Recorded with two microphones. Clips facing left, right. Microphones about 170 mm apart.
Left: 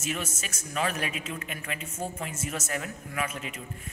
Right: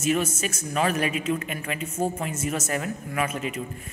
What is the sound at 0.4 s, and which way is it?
Speech, 50° right (ahead or behind).